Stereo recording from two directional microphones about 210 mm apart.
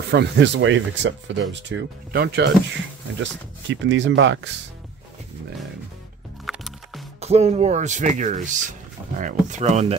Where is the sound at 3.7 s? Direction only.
65° right (ahead or behind).